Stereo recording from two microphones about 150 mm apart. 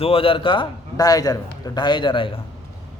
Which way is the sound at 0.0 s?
40° left (ahead or behind).